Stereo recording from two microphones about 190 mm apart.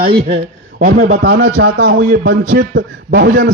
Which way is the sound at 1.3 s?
80° right.